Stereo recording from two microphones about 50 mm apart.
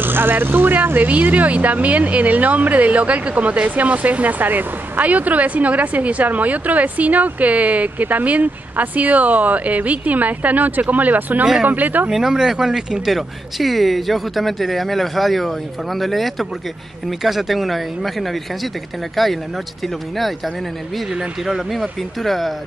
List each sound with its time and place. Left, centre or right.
0.0 s speech: right
12.1 s speech: centre